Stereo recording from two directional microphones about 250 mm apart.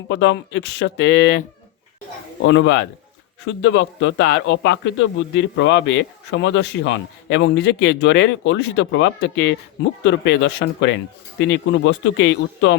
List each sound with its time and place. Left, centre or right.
0.1 s a man's voice: left
2.4 s a man's voice: left